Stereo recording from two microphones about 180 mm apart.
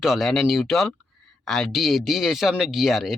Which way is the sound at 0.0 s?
Centre (ahead or behind).